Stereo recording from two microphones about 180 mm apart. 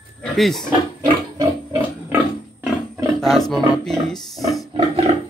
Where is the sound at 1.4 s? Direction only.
15° right (ahead or behind).